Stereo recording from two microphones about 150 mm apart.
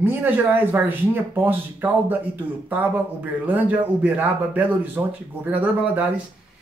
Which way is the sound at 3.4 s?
10° right (ahead or behind).